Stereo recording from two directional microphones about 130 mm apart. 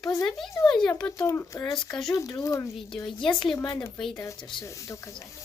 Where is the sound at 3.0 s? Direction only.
40° left (ahead or behind); by 5.3 s 25° left (ahead or behind).